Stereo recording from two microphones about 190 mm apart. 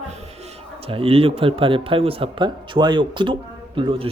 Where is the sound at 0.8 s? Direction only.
30° right (ahead or behind).